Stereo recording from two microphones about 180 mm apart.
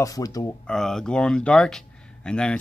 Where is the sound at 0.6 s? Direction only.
5° left (ahead or behind).